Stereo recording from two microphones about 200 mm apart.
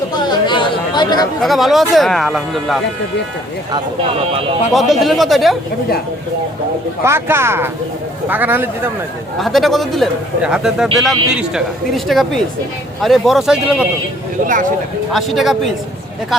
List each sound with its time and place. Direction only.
0.3 s chatter: 25° left (ahead or behind)
1.4 s speech: centre (ahead or behind)
4.7 s speech: centre (ahead or behind)
7.0 s speech: 10° right (ahead or behind)
9.4 s speech: centre (ahead or behind)
14.4 s speech: 40° right (ahead or behind)
15.1 s speech: centre (ahead or behind)